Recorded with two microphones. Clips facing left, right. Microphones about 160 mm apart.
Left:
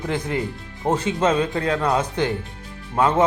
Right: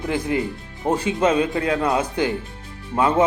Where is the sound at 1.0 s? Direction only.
30° left (ahead or behind).